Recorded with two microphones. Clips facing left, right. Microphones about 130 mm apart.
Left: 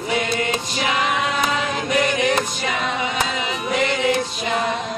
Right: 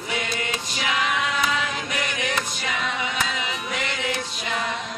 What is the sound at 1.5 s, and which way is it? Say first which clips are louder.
Choir: left 6 dB; 35° left (ahead or behind).